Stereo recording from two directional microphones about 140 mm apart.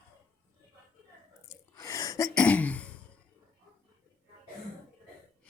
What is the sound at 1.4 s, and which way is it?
Sneeze, 20° left (ahead or behind).